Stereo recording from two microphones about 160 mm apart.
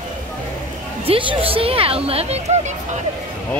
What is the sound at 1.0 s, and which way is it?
Speech, 35° right (ahead or behind).